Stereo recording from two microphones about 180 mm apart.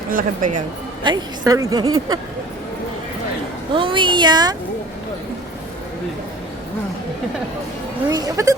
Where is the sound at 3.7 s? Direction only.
30° right (ahead or behind).